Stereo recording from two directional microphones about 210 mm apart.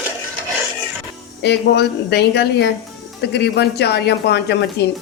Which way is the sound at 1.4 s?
55° left (ahead or behind).